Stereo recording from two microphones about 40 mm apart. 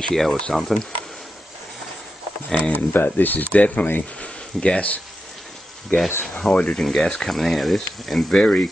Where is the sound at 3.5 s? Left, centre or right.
Left.